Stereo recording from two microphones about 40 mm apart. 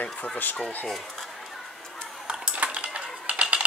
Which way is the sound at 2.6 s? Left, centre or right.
Right.